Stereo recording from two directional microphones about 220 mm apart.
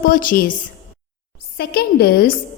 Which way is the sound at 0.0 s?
40° left (ahead or behind).